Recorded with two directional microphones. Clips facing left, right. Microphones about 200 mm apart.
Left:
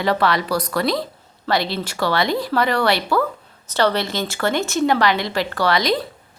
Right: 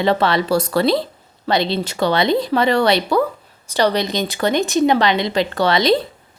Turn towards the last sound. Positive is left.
turn(degrees=-25)  # may be behind; listen again after turning